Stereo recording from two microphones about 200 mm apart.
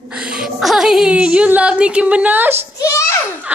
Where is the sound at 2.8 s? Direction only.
15° left (ahead or behind).